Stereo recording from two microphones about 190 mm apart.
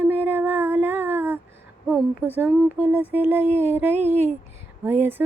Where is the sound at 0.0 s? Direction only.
10° right (ahead or behind).